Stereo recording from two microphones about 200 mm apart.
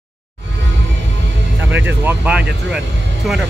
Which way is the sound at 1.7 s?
65° right (ahead or behind).